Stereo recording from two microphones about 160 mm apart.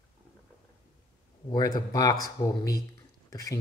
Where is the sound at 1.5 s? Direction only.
25° left (ahead or behind).